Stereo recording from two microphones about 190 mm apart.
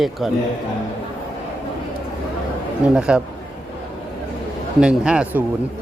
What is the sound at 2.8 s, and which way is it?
Speech, 5° right (ahead or behind).